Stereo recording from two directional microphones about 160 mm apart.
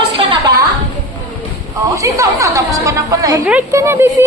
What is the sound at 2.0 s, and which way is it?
Chatter, 20° right (ahead or behind).